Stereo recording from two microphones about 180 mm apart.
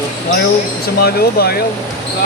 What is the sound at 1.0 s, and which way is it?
Speech, 60° left (ahead or behind).